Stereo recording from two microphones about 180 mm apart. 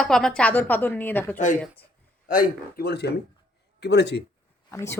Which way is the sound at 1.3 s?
45° left (ahead or behind).